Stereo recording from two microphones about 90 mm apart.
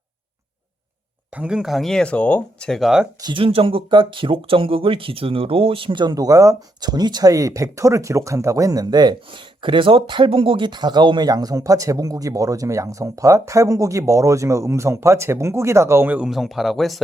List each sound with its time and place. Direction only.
1.4 s speech: 10° right (ahead or behind)
3.3 s speech: 85° right; by 6.1 s 60° right (ahead or behind)
6.1 s speech: 40° right (ahead or behind); by 10.7 s 90° right
10.7 s speech: 55° right (ahead or behind); by 16.1 s 30° right (ahead or behind)
16.1 s speech: 5° right (ahead or behind)